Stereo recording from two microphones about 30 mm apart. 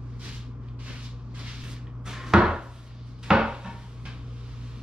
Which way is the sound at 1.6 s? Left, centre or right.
Centre.